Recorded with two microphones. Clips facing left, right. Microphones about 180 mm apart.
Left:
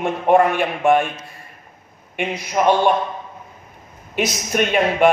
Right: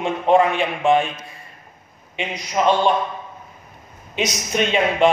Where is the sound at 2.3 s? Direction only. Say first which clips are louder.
Left 1 dB; 5° left (ahead or behind).